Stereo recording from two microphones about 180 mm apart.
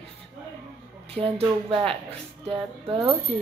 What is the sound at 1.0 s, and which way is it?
Speech, 30° right (ahead or behind).